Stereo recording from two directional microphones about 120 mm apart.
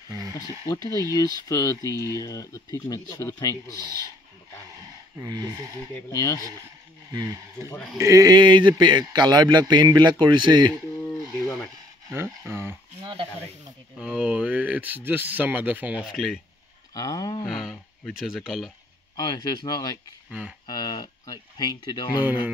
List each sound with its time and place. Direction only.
0.1 s speech: 30° right (ahead or behind)
0.7 s speech: 30° left (ahead or behind)
5.2 s speech: 35° right (ahead or behind)
6.1 s speech: 30° left (ahead or behind)
7.1 s a man's voice: 30° right (ahead or behind)
12.1 s speech: 20° right (ahead or behind)
13.9 s speech: 10° right (ahead or behind)
16.1 s speech: centre (ahead or behind)
16.9 s speech: 30° left (ahead or behind)
17.5 s speech: centre (ahead or behind)
19.1 s speech: 35° left (ahead or behind)
20.2 s speech: 10° right (ahead or behind)
20.6 s speech: 35° left (ahead or behind)
22.2 s speech: 15° right (ahead or behind)